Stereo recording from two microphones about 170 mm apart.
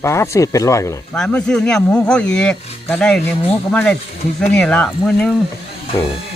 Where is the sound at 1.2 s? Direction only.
5° left (ahead or behind).